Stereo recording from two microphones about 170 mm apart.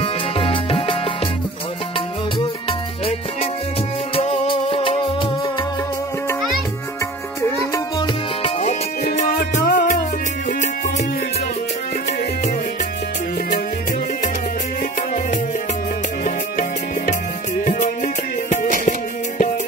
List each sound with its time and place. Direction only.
0.0 s music: 35° left (ahead or behind)
4.1 s music: 35° left (ahead or behind)
8.4 s music: 35° left (ahead or behind)
9.0 s music: 50° left (ahead or behind)
14.8 s music: 50° left (ahead or behind)